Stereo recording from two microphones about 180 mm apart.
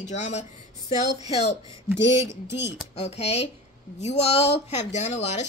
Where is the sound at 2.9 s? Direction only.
35° left (ahead or behind).